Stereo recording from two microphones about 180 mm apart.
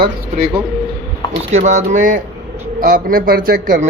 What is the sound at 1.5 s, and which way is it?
A man's voice, 40° right (ahead or behind).